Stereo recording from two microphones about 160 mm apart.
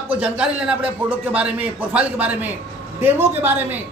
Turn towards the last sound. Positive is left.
turn(degrees=-10)  # may be behind; listen again after turning